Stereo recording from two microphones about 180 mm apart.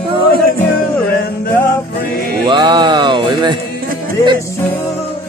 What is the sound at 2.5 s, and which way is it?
Music, 25° right (ahead or behind).